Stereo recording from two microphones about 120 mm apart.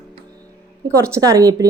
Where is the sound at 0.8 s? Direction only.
25° right (ahead or behind).